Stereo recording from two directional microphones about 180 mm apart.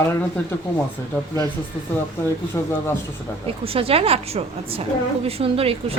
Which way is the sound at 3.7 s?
30° right (ahead or behind).